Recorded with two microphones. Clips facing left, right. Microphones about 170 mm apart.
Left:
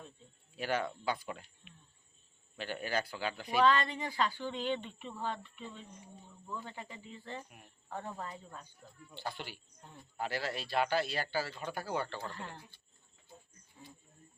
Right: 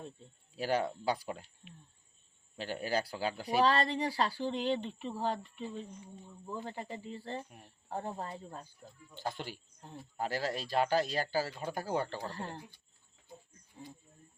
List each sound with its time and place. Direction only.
0.5 s speech: 35° right (ahead or behind)